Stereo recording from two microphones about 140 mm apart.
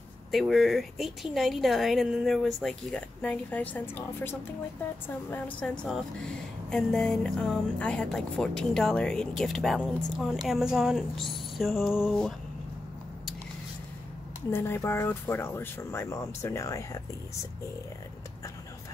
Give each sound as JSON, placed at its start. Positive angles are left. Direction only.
{"t": 0.3, "sound": "speech", "side_deg": 0}
{"t": 14.5, "sound": "speech", "side_deg": 15}